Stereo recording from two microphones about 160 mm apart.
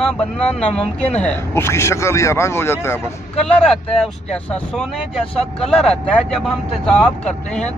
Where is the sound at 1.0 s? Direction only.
10° left (ahead or behind).